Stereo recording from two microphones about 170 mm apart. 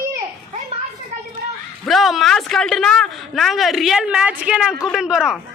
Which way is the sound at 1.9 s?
Centre (ahead or behind).